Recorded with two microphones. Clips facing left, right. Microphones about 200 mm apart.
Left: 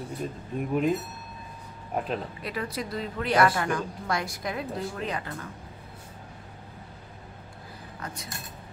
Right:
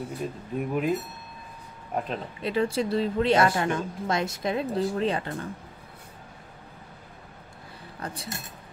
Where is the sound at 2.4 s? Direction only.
25° right (ahead or behind).